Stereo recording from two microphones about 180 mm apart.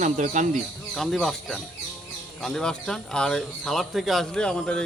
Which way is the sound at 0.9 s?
Centre (ahead or behind).